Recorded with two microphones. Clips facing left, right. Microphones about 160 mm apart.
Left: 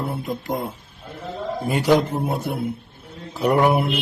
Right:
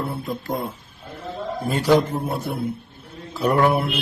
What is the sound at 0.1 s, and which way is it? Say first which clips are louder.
Speech: left 1 dB; 20° left (ahead or behind).